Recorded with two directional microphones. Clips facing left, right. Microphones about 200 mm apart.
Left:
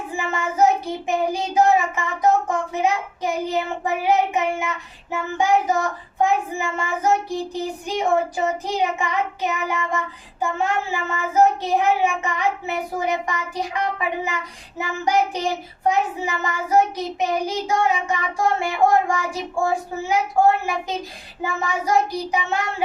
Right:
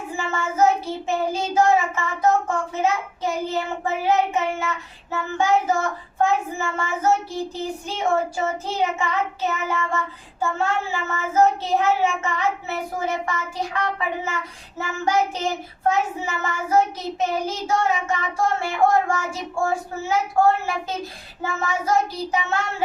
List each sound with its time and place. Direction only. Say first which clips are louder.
0.2 s child singing: left 1 dB; 15° left (ahead or behind)
11.1 s child singing: left 1 dB; 15° left (ahead or behind)